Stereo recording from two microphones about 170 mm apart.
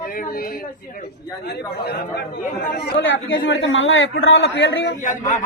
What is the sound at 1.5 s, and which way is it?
Speech, 70° left (ahead or behind).